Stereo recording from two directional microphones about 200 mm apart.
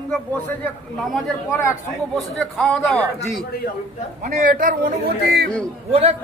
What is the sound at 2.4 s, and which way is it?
Speech, 5° left (ahead or behind).